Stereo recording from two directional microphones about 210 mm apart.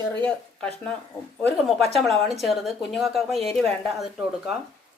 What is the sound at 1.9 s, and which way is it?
A woman's voice, centre (ahead or behind).